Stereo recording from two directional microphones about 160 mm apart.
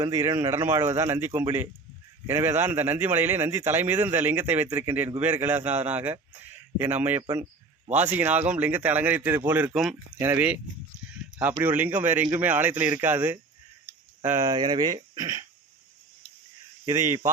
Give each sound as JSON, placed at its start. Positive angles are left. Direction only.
{"t": 0.0, "sound": "a man's voice", "side_deg": -20}
{"t": 11.6, "sound": "a man's voice", "side_deg": -10}
{"t": 16.8, "sound": "a man's voice", "side_deg": -15}